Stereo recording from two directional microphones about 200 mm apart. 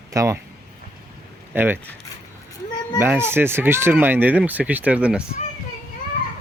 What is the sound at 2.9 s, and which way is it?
Speech, 10° right (ahead or behind).